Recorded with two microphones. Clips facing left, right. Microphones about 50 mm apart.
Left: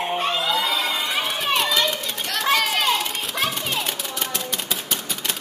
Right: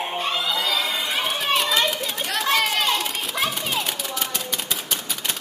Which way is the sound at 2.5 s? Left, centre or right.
Centre.